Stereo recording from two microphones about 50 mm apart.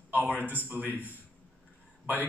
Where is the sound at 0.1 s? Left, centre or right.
Right.